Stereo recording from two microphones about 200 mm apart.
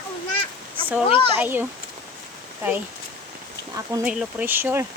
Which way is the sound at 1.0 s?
25° left (ahead or behind).